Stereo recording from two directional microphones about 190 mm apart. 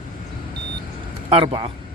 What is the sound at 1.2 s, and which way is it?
Speech, 25° right (ahead or behind).